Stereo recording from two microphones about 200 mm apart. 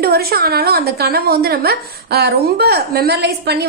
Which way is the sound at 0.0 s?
50° right (ahead or behind).